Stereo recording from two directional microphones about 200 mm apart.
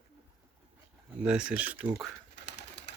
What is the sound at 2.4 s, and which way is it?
Bird, 60° left (ahead or behind).